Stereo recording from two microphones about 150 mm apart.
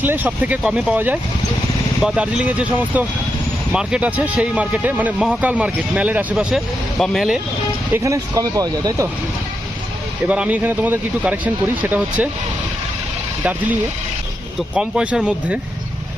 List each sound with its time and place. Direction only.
0.0 s speech: 10° right (ahead or behind)
7.9 s speech: 20° right (ahead or behind)
10.2 s speech: 10° right (ahead or behind)
14.8 s speech: 5° right (ahead or behind)